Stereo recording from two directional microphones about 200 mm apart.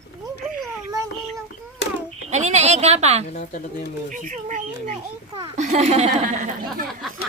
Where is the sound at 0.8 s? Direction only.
15° right (ahead or behind).